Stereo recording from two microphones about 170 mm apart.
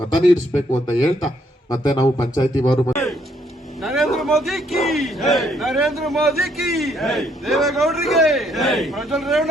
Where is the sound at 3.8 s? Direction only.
Centre (ahead or behind).